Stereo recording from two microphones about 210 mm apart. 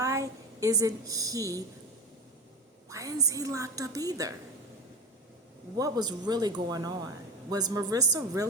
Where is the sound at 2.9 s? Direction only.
15° right (ahead or behind).